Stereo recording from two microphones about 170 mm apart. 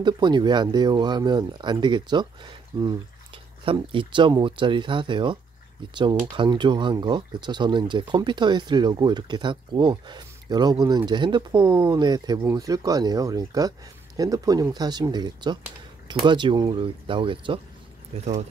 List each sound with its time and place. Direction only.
0.0 s speech: 25° right (ahead or behind)
3.6 s speech: 30° right (ahead or behind)